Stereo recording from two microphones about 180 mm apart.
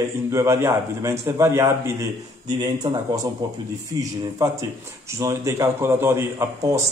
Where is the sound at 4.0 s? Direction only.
20° right (ahead or behind).